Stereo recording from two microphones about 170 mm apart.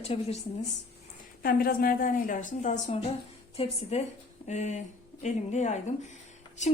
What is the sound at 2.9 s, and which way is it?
A woman's voice, 35° left (ahead or behind).